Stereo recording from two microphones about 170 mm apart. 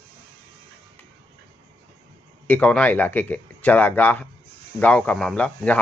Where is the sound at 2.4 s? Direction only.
10° left (ahead or behind).